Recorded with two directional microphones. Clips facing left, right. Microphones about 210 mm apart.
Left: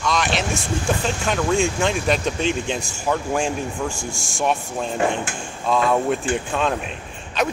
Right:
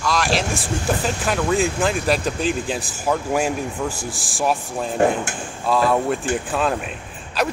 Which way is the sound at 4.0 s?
35° right (ahead or behind).